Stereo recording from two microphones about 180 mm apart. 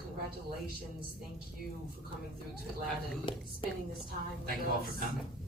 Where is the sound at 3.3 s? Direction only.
30° left (ahead or behind).